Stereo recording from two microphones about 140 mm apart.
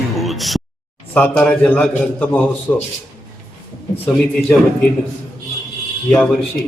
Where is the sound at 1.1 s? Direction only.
10° left (ahead or behind).